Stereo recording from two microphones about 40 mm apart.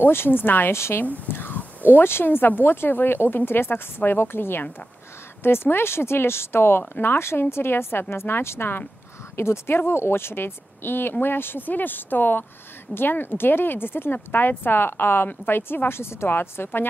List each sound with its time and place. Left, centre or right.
0.1 s a woman's voice: left
1.8 s speech: right
2.3 s speech: left
5.4 s a woman's voice: left
9.4 s a woman's voice: left